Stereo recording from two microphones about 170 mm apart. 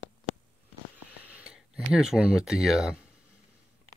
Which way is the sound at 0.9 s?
10° right (ahead or behind).